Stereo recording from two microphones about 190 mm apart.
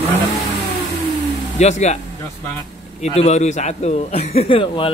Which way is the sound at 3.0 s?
35° left (ahead or behind).